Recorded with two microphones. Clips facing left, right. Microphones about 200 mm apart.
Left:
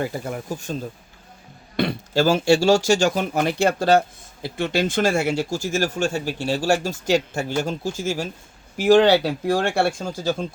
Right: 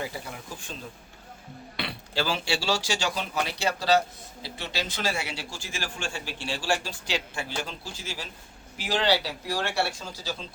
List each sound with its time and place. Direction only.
0.0 s speech: 50° left (ahead or behind)